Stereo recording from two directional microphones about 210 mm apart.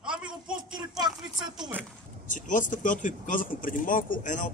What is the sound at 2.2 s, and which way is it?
Speech, 40° left (ahead or behind).